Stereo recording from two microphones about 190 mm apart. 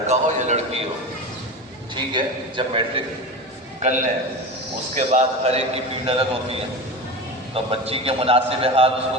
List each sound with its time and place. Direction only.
0.1 s a man's voice: 35° right (ahead or behind)
2.1 s a man's voice: 25° right (ahead or behind)
3.8 s a man's voice: 40° right (ahead or behind)